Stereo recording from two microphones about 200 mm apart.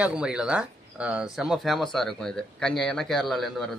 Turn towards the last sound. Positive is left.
turn(degrees=0)  # may be behind; listen again after turning